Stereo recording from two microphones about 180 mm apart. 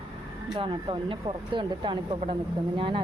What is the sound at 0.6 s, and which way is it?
Speech, 25° right (ahead or behind).